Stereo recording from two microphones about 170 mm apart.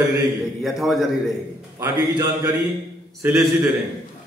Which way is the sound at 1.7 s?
20° right (ahead or behind).